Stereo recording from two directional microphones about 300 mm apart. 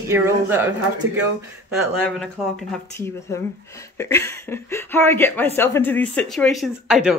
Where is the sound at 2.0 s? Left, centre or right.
Centre.